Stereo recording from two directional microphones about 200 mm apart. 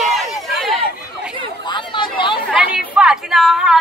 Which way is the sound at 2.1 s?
25° left (ahead or behind).